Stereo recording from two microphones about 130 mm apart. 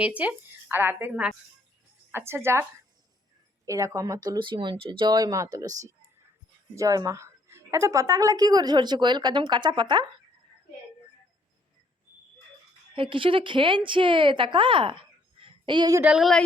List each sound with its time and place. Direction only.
0.0 s a woman's voice: 10° right (ahead or behind)
3.7 s a woman's voice: 25° right (ahead or behind)
12.9 s speech: 40° right (ahead or behind)
16.0 s speech: 5° right (ahead or behind)